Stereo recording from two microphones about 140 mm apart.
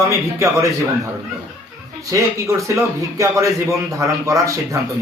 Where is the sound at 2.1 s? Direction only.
20° right (ahead or behind).